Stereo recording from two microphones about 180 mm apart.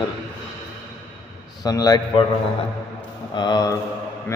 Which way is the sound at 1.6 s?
20° left (ahead or behind).